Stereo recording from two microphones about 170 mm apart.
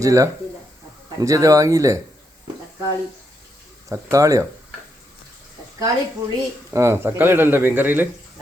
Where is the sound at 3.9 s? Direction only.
20° right (ahead or behind).